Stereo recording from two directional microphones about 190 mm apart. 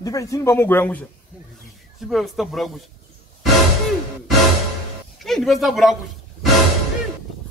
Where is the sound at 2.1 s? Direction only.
Centre (ahead or behind).